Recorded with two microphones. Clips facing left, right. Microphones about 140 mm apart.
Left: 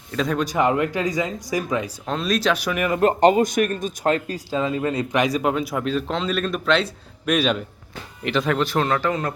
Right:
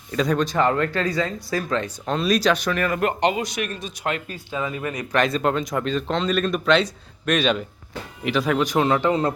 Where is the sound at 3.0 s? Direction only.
40° left (ahead or behind).